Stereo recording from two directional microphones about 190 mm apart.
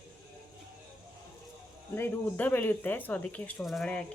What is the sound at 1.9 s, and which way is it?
Speech, 10° left (ahead or behind).